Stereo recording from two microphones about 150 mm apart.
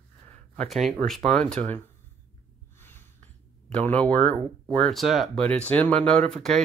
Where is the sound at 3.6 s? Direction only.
10° left (ahead or behind).